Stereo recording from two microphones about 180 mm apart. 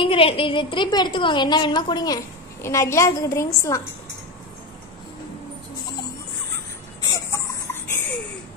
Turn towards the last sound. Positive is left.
turn(degrees=15)  # may be behind; listen again after turning